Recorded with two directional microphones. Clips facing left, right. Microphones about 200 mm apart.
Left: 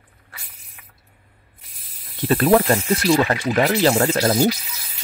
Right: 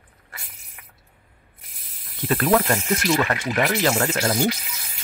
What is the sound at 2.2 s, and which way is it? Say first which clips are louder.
Speech: left 4 dB; 25° left (ahead or behind).